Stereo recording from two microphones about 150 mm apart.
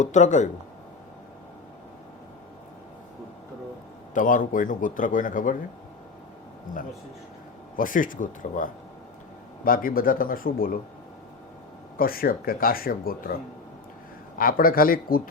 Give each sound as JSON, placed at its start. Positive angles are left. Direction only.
{"t": 0.0, "sound": "speech", "side_deg": 55}
{"t": 4.1, "sound": "speech", "side_deg": 60}
{"t": 7.8, "sound": "speech", "side_deg": 65}
{"t": 11.9, "sound": "speech", "side_deg": 75}
{"t": 14.3, "sound": "speech", "side_deg": 70}